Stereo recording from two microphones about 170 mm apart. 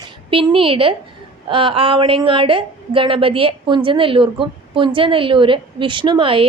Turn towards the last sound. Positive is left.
turn(degrees=-30)  # may be behind; listen again after turning